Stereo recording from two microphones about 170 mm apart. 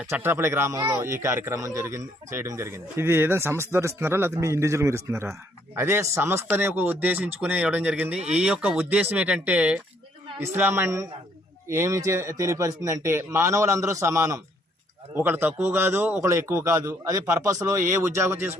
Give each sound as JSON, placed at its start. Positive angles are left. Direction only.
{"t": 0.1, "sound": "speech", "side_deg": -15}